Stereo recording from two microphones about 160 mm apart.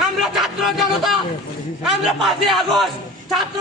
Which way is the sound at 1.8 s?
Centre (ahead or behind).